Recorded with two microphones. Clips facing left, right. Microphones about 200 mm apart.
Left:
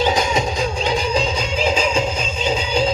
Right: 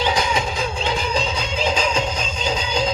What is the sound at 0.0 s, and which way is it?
Music, 45° left (ahead or behind).